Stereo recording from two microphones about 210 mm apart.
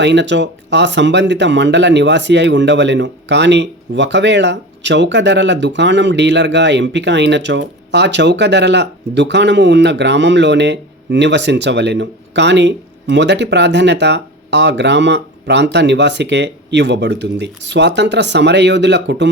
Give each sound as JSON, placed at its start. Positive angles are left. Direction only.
{"t": 0.0, "sound": "speech", "side_deg": -55}